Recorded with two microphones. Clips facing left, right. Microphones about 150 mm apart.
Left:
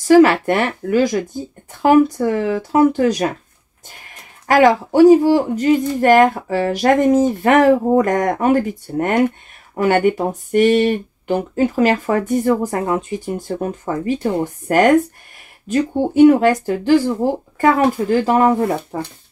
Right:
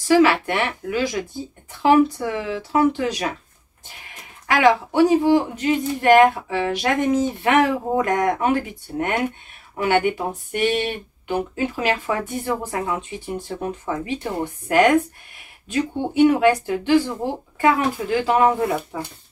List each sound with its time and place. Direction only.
0.1 s speech: 45° left (ahead or behind)
4.5 s speech: 40° left (ahead or behind)
16.3 s speech: 40° left (ahead or behind)